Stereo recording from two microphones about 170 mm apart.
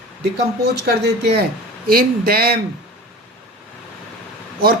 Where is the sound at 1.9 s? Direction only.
60° right (ahead or behind).